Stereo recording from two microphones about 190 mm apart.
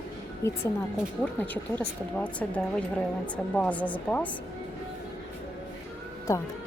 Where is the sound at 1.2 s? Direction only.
10° left (ahead or behind).